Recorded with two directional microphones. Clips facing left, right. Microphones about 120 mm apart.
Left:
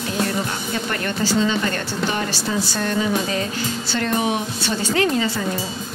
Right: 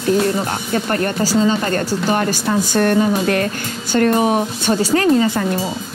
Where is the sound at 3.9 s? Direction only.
45° right (ahead or behind).